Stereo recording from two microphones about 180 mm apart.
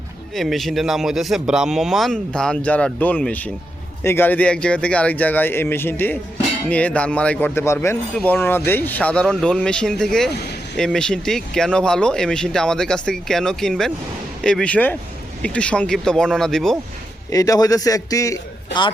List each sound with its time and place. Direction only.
0.3 s speech: centre (ahead or behind)
17.3 s a man's voice: 20° left (ahead or behind)